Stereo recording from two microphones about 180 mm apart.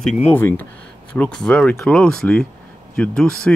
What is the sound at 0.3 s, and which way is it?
Speech, 10° left (ahead or behind).